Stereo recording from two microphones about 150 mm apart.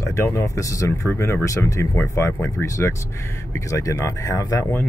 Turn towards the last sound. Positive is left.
turn(degrees=20)  # may be behind; listen again after turning